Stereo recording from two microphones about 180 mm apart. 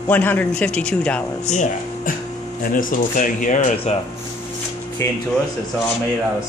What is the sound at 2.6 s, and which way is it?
Speech, 50° left (ahead or behind).